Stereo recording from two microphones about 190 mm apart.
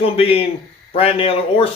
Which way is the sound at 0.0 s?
30° left (ahead or behind).